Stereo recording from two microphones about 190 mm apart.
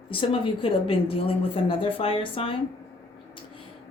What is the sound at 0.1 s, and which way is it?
Speech, 30° left (ahead or behind).